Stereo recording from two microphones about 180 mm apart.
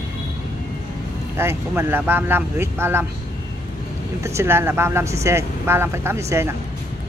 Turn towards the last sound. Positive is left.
turn(degrees=-15)  # may be behind; listen again after turning